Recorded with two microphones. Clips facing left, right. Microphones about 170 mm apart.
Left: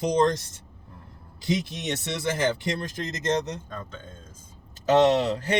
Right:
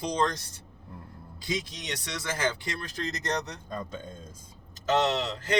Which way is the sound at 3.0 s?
20° left (ahead or behind).